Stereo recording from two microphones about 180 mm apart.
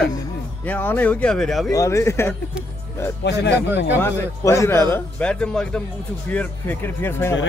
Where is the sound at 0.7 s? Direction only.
10° left (ahead or behind).